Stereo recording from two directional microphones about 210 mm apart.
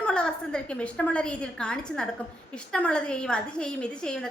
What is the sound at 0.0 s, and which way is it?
A woman's voice, 5° left (ahead or behind).